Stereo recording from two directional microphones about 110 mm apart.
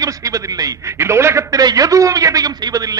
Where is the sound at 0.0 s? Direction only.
30° right (ahead or behind).